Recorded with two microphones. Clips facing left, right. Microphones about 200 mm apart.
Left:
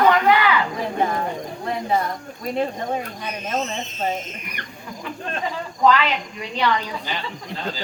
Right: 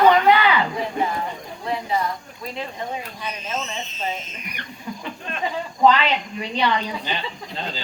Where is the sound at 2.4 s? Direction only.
45° left (ahead or behind).